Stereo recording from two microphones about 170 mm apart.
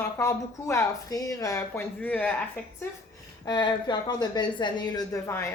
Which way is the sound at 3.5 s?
25° left (ahead or behind).